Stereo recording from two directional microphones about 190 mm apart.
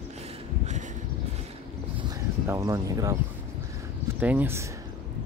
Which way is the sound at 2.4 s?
15° right (ahead or behind).